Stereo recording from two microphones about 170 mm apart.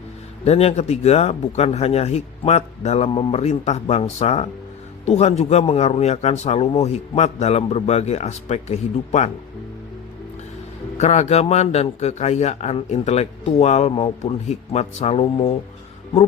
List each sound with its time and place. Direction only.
0.4 s a man's voice: 40° left (ahead or behind)
10.9 s a man's voice: 40° left (ahead or behind)